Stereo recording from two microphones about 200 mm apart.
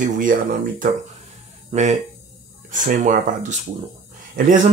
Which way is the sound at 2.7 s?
40° right (ahead or behind).